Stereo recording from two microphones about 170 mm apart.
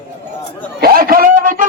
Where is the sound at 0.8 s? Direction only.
60° right (ahead or behind).